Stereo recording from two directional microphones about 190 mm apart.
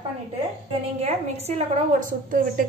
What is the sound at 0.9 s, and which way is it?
A woman's voice, 35° right (ahead or behind).